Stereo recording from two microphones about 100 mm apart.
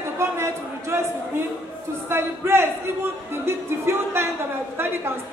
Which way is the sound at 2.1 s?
25° right (ahead or behind).